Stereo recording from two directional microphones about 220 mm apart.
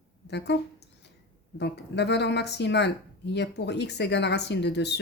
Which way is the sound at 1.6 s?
50° left (ahead or behind).